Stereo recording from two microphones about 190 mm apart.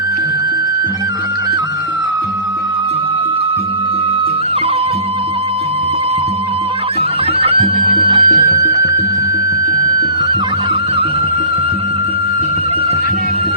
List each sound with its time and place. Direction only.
7.3 s music: 30° right (ahead or behind)